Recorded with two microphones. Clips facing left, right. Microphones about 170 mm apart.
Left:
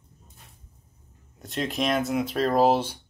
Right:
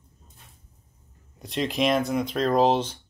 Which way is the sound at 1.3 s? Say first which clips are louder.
Right 2 dB; centre (ahead or behind).